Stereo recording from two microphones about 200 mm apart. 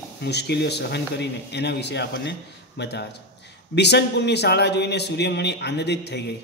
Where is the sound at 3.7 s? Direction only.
55° left (ahead or behind).